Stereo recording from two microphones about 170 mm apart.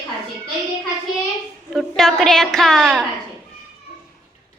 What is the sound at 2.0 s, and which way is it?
A woman's voice, centre (ahead or behind).